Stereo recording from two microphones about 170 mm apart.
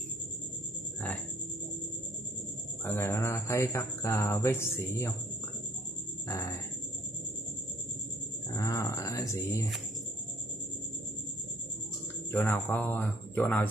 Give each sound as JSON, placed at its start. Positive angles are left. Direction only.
{"t": 2.8, "sound": "a man's voice", "side_deg": 15}
{"t": 6.2, "sound": "music", "side_deg": 20}
{"t": 8.5, "sound": "speech", "side_deg": 20}
{"t": 12.3, "sound": "a man's voice", "side_deg": 15}